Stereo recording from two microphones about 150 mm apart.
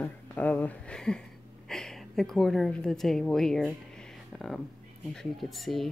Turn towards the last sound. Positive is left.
turn(degrees=0)  # may be behind; listen again after turning